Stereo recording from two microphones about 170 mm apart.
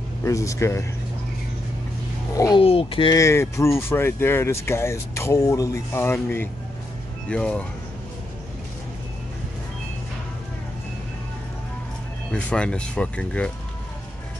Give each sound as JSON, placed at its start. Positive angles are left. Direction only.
{"t": 0.2, "sound": "speech", "side_deg": 20}
{"t": 2.3, "sound": "speech", "side_deg": 20}
{"t": 2.6, "sound": "speech", "side_deg": 35}
{"t": 3.2, "sound": "speech", "side_deg": 15}
{"t": 12.3, "sound": "speech", "side_deg": 5}